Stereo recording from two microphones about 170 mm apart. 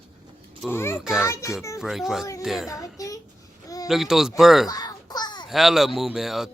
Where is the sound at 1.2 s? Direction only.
15° left (ahead or behind).